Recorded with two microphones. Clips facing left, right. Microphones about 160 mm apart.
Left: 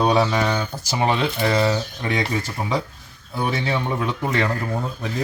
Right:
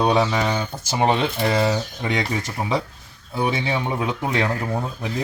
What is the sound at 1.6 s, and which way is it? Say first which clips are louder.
Speech: even; 15° right (ahead or behind).